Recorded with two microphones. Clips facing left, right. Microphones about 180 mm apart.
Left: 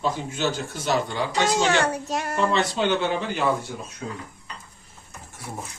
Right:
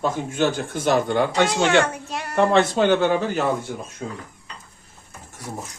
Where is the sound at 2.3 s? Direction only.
60° right (ahead or behind).